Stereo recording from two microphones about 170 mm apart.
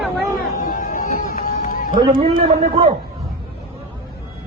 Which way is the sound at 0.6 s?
55° left (ahead or behind).